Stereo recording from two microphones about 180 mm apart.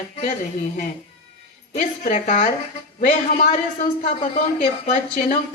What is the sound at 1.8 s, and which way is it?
A woman's voice, 45° left (ahead or behind).